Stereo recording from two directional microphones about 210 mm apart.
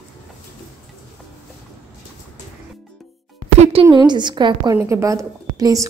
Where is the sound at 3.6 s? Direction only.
30° right (ahead or behind).